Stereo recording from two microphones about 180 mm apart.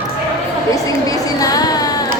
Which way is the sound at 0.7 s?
20° left (ahead or behind).